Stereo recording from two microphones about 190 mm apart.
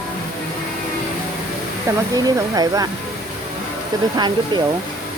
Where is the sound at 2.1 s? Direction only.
20° right (ahead or behind).